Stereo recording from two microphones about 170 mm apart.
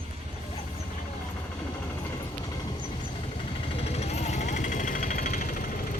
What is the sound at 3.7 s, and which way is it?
Vehicle, 40° left (ahead or behind).